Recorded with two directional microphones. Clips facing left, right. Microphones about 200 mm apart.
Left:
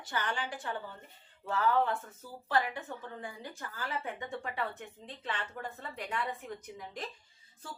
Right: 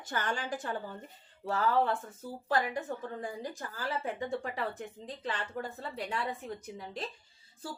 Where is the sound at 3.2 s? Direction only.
40° right (ahead or behind).